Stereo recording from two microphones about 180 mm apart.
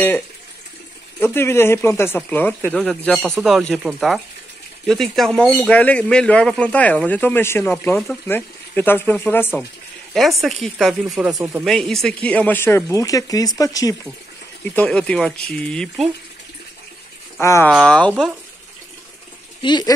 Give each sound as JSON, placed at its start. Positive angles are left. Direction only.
{"t": 1.2, "sound": "speech", "side_deg": 15}
{"t": 10.1, "sound": "speech", "side_deg": 0}
{"t": 14.6, "sound": "speech", "side_deg": 5}
{"t": 17.4, "sound": "speech", "side_deg": 15}
{"t": 17.6, "sound": "speech", "side_deg": 5}
{"t": 19.6, "sound": "speech", "side_deg": 25}